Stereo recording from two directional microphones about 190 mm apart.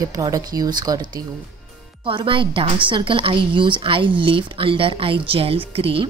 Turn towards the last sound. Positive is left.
turn(degrees=-30)  # may be behind; listen again after turning